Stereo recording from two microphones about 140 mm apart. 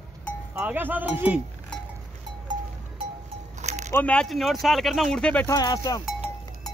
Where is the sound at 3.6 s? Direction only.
55° right (ahead or behind).